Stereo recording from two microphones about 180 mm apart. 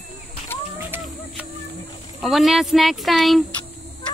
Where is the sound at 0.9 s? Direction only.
10° right (ahead or behind).